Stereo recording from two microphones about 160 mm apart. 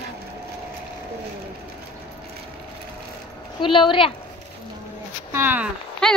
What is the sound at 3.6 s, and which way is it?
Speech, 30° left (ahead or behind).